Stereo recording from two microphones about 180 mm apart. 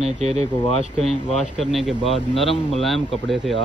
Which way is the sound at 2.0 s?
30° left (ahead or behind).